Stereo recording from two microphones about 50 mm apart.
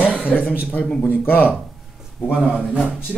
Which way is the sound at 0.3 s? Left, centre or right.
Left.